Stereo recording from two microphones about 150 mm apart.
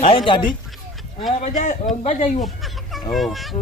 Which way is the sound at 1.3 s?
60° left (ahead or behind).